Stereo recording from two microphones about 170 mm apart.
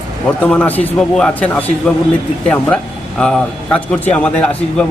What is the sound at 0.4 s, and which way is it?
A man's voice, 10° left (ahead or behind).